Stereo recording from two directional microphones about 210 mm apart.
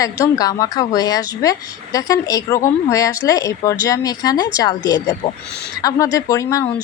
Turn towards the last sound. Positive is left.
turn(degrees=15)  # may be behind; listen again after turning